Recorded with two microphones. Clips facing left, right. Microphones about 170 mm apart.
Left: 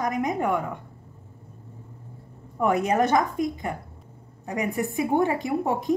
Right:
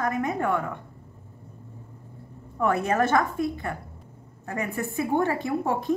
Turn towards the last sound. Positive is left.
turn(degrees=15)  # may be behind; listen again after turning